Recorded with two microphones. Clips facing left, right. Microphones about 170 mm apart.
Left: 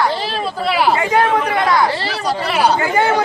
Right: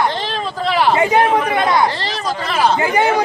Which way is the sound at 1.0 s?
20° right (ahead or behind).